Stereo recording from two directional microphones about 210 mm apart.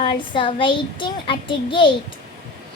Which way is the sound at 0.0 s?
25° left (ahead or behind).